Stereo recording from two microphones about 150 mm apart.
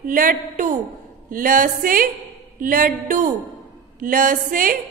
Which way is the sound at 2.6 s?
65° right (ahead or behind).